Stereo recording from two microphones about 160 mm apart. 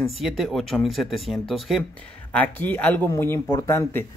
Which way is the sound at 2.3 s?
10° left (ahead or behind).